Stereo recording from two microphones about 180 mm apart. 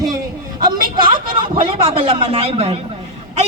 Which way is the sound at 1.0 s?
30° right (ahead or behind).